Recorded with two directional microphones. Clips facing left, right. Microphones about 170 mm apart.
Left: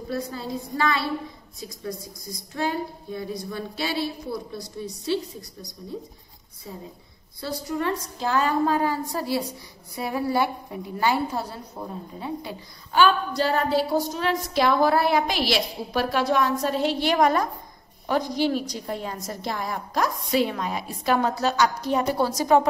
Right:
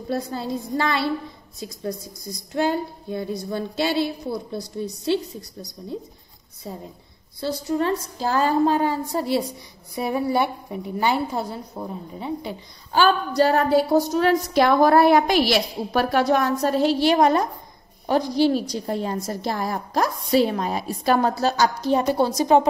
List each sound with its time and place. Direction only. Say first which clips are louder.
0.1 s speech: right 4 dB; 30° right (ahead or behind)
2.6 s speech: right 4 dB; 30° right (ahead or behind)
7.3 s speech: right 5 dB; 30° right (ahead or behind)
12.9 s a woman's voice: right 1 dB; 35° right (ahead or behind)